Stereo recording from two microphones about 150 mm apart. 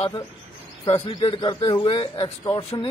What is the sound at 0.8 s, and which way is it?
A man's voice, 40° left (ahead or behind).